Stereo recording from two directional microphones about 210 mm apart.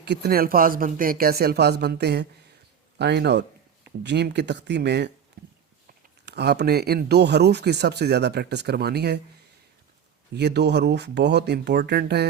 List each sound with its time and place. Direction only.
0.0 s speech: 50° right (ahead or behind)
5.4 s a sound: 50° right (ahead or behind)
6.2 s speech: 50° right (ahead or behind)
10.3 s speech: 55° right (ahead or behind)